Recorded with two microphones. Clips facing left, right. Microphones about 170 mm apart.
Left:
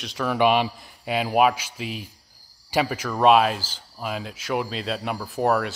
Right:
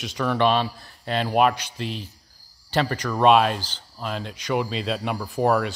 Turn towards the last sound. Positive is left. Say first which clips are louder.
# right 1 dB
turn(degrees=0)  # may be behind; listen again after turning